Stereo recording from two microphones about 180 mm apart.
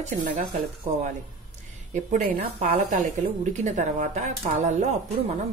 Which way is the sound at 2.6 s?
40° right (ahead or behind).